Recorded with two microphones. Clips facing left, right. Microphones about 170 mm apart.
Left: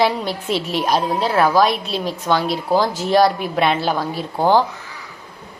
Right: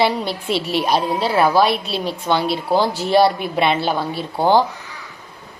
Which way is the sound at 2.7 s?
30° right (ahead or behind).